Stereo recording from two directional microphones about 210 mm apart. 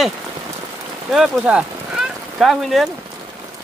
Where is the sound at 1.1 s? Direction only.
Centre (ahead or behind).